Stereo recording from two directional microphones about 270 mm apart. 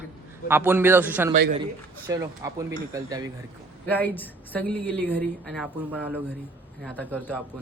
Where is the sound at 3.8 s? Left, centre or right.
Centre.